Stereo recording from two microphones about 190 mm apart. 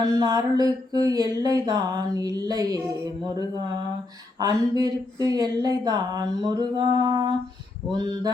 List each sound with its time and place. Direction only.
0.0 s speech: 20° right (ahead or behind)
4.4 s speech: 20° right (ahead or behind)